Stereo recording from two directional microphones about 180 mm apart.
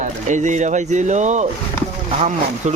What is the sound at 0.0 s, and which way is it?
Speech, 45° right (ahead or behind).